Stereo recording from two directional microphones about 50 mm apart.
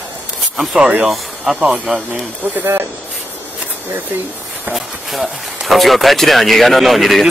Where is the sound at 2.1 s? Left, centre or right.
Right.